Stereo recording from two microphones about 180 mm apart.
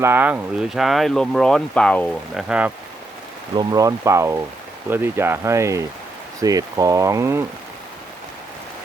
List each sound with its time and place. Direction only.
0.0 s speech: 10° right (ahead or behind)
3.5 s speech: 20° right (ahead or behind)